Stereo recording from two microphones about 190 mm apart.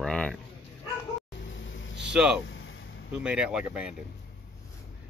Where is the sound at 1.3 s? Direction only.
75° left (ahead or behind).